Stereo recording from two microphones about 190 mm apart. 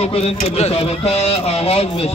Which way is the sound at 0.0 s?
35° left (ahead or behind).